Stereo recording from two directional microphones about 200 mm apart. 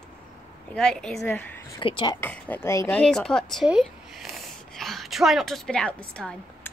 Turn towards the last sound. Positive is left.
turn(degrees=5)  # may be behind; listen again after turning